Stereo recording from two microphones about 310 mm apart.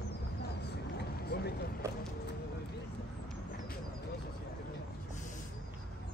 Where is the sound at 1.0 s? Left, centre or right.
Left.